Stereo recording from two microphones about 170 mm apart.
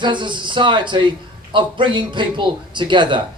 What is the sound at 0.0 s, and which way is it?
A man's voice, 25° right (ahead or behind).